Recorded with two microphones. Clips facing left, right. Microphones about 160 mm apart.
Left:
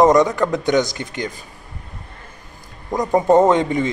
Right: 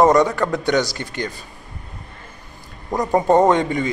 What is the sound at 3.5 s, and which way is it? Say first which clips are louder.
Speech: left 1 dB; 20° left (ahead or behind).